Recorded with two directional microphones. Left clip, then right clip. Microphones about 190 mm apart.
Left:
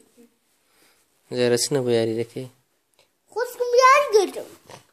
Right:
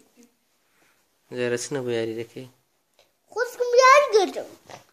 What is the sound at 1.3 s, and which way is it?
Speech, 35° left (ahead or behind).